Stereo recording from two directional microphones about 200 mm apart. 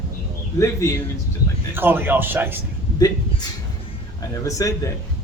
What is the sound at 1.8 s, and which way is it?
Speech, 10° right (ahead or behind).